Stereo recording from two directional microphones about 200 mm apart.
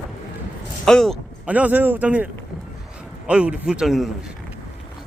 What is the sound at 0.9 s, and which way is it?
A man's voice, 5° left (ahead or behind).